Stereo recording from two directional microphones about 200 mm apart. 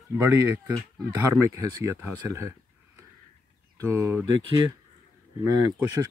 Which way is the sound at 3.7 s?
15° right (ahead or behind).